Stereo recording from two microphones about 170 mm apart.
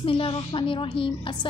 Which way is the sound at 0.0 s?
30° left (ahead or behind).